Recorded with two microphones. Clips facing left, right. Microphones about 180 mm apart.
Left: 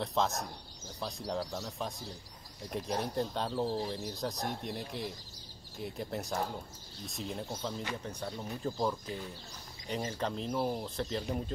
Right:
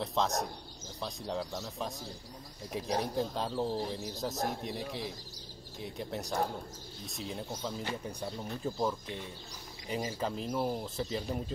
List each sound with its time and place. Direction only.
0.0 s speech: centre (ahead or behind)